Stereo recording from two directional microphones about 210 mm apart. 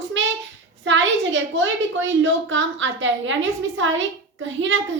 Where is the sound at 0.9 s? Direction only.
65° right (ahead or behind).